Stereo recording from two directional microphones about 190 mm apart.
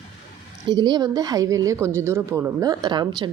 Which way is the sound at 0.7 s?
20° right (ahead or behind).